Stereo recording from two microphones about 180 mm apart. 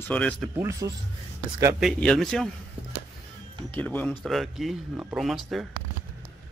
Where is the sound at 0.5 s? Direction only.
15° right (ahead or behind).